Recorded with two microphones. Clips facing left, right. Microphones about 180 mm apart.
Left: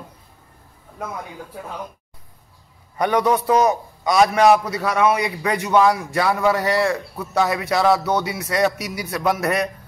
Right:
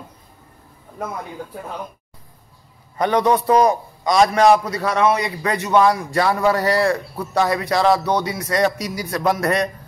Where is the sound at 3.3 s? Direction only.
30° right (ahead or behind).